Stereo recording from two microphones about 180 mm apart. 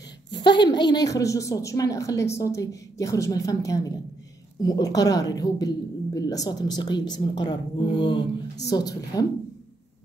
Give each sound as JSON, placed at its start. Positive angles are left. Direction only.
{"t": 0.6, "sound": "a woman's voice", "side_deg": 25}